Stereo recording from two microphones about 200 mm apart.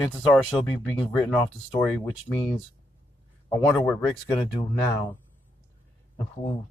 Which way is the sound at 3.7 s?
10° left (ahead or behind).